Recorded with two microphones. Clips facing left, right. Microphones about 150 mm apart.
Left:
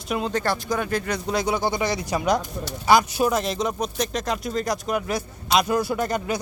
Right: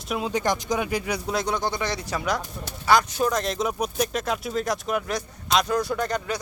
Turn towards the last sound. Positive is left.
turn(degrees=10)  # may be behind; listen again after turning